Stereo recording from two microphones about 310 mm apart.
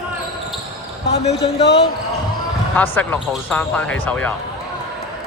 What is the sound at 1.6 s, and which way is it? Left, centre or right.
Speech, left.